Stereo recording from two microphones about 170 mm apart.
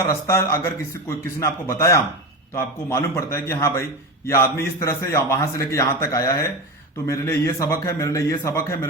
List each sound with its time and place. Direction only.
0.1 s a man's voice: 15° left (ahead or behind)